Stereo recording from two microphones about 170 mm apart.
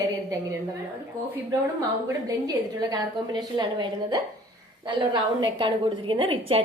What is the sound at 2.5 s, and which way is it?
A woman's voice, 25° right (ahead or behind).